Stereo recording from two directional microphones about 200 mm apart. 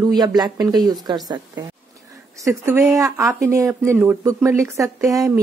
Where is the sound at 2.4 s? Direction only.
15° right (ahead or behind).